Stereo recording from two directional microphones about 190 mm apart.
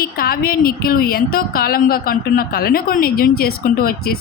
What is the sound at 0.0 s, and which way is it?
A woman's voice, 50° left (ahead or behind).